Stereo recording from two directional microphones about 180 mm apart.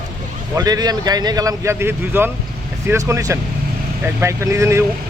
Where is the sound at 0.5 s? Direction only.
20° right (ahead or behind).